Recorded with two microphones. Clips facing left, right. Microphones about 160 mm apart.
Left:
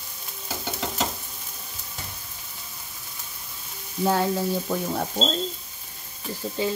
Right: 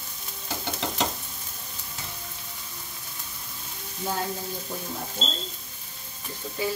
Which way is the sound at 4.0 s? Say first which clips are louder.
Left 8 dB; 80° left.